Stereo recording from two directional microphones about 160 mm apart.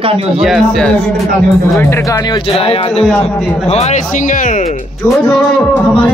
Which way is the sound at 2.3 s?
35° left (ahead or behind).